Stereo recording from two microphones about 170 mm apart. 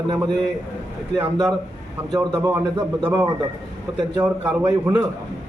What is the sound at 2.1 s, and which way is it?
A man's voice, 20° right (ahead or behind).